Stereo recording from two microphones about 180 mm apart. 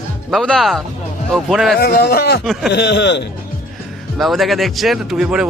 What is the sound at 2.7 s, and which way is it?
Speech, 70° left (ahead or behind).